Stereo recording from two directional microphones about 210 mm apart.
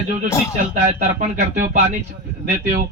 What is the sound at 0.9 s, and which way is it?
Speech, 35° right (ahead or behind).